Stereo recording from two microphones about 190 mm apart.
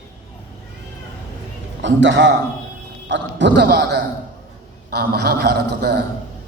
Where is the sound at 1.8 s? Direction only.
75° right (ahead or behind); by 6.0 s 60° right (ahead or behind).